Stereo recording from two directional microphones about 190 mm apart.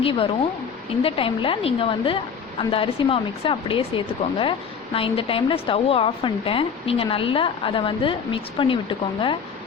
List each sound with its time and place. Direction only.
1.0 s a woman's voice: 30° left (ahead or behind)